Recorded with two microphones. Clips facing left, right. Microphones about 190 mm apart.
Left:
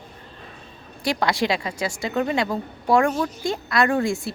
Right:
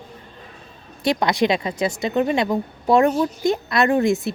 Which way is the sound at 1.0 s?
20° right (ahead or behind).